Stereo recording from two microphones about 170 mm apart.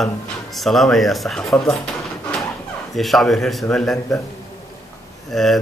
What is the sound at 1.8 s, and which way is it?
Drawer open or close, 5° left (ahead or behind).